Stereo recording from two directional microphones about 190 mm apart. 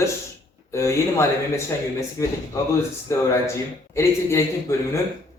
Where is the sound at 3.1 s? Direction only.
15° left (ahead or behind).